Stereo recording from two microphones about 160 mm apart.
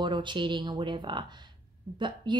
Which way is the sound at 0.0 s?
30° right (ahead or behind).